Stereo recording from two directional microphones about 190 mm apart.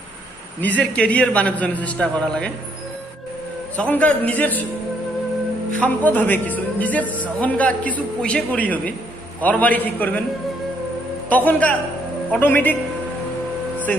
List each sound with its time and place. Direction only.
0.6 s a man's voice: 10° left (ahead or behind)
3.7 s a man's voice: 5° left (ahead or behind)
5.7 s a man's voice: 10° left (ahead or behind)
11.2 s a man's voice: 10° left (ahead or behind)